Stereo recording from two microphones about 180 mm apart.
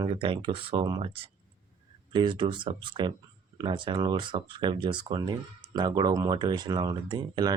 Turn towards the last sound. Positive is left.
turn(degrees=-25)  # may be behind; listen again after turning